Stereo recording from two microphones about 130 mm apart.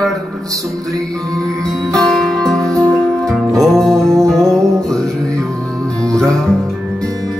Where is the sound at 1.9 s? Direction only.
5° left (ahead or behind).